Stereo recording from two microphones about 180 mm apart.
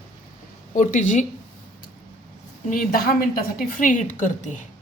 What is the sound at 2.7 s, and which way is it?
A woman's voice, 55° left (ahead or behind).